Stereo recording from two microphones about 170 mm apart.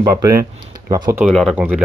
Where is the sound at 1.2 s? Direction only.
Centre (ahead or behind).